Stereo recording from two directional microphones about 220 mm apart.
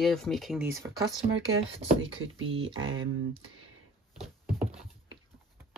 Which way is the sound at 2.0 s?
60° right (ahead or behind).